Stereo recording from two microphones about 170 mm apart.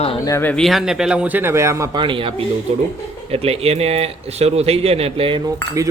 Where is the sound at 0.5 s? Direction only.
Centre (ahead or behind); by 2.3 s 30° right (ahead or behind).